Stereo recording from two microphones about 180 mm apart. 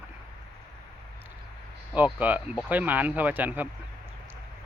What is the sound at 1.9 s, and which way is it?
Speech, 10° right (ahead or behind).